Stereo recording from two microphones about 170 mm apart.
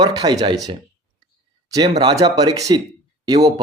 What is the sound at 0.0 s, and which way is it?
Speech, 25° right (ahead or behind).